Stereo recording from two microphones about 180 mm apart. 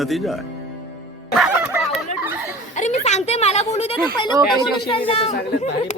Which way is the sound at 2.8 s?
40° left (ahead or behind).